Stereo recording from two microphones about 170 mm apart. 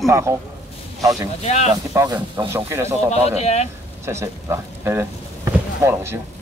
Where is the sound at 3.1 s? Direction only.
40° left (ahead or behind).